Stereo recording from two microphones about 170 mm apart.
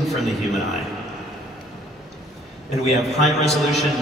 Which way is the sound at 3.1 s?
40° left (ahead or behind).